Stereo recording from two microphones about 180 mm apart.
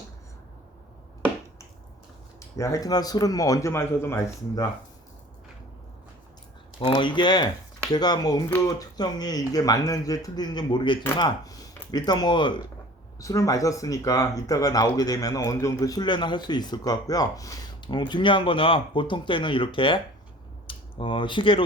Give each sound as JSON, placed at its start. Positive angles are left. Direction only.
{"t": 2.4, "sound": "speech", "side_deg": 15}
{"t": 6.7, "sound": "speech", "side_deg": 25}